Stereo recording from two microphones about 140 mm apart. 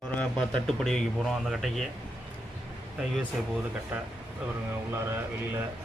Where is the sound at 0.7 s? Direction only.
5° left (ahead or behind).